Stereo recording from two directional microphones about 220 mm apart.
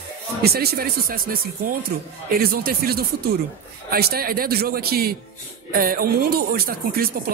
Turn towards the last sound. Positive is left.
turn(degrees=-45)  # may be behind; listen again after turning